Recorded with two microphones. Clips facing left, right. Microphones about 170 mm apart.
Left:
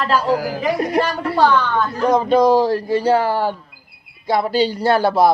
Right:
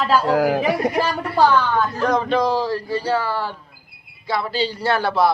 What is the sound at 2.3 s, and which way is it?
A man's voice, 45° left (ahead or behind).